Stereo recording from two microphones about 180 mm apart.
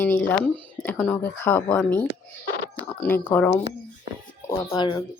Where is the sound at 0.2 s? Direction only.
5° left (ahead or behind).